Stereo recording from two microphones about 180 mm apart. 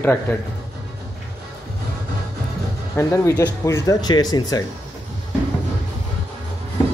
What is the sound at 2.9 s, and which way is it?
Speech, 15° left (ahead or behind).